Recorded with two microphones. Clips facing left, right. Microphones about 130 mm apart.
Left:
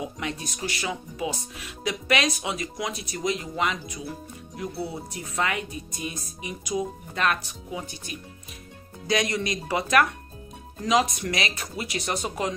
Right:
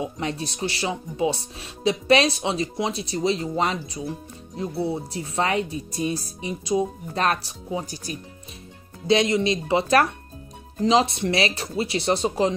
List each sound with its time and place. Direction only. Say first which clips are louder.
0.0 s speech: right 4 dB; 30° right (ahead or behind)
9.0 s speech: right 6 dB; 25° right (ahead or behind)